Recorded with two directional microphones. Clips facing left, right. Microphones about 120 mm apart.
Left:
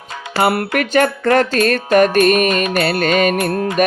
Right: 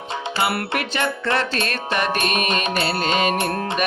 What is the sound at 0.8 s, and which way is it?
Music, 50° left (ahead or behind).